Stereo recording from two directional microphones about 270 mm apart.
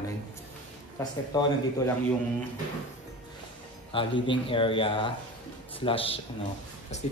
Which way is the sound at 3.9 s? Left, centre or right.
Centre.